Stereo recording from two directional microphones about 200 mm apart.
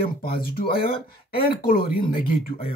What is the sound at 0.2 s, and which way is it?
Speech, 50° left (ahead or behind).